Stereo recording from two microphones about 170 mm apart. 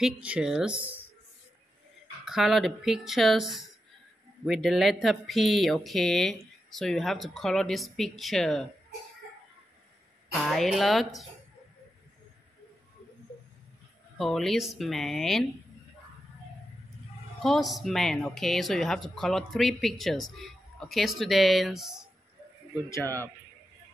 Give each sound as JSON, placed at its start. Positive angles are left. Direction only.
{"t": 0.0, "sound": "speech", "side_deg": -5}
{"t": 2.2, "sound": "speech", "side_deg": 0}
{"t": 10.4, "sound": "speech", "side_deg": 0}
{"t": 14.1, "sound": "speech", "side_deg": 0}
{"t": 17.4, "sound": "speech", "side_deg": 0}
{"t": 22.8, "sound": "speech", "side_deg": 15}